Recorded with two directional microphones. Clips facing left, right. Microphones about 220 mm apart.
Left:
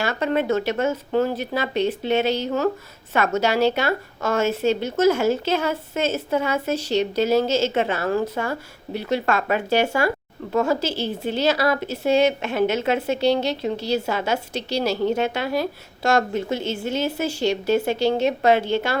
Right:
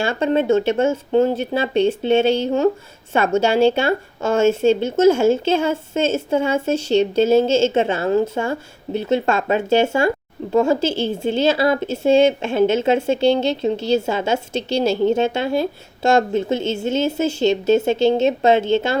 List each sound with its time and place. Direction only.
0.0 s a woman's voice: 30° right (ahead or behind)